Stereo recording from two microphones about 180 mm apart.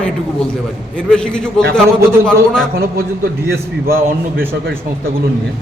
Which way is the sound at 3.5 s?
55° right (ahead or behind).